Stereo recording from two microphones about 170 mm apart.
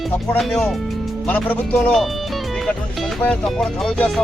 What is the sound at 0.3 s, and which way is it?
Speech, centre (ahead or behind).